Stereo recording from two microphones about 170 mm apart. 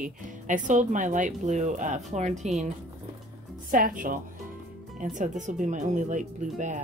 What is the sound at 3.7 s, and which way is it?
Speech, 55° right (ahead or behind).